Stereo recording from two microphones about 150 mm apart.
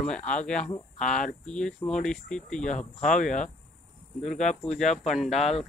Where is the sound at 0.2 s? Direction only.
55° left (ahead or behind).